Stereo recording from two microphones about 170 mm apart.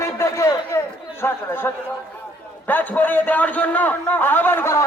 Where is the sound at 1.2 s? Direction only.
15° left (ahead or behind).